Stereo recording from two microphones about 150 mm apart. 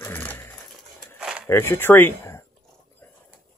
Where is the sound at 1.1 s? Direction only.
5° right (ahead or behind).